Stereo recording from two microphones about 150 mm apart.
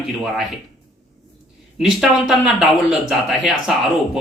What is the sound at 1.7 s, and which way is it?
Speech, 5° right (ahead or behind).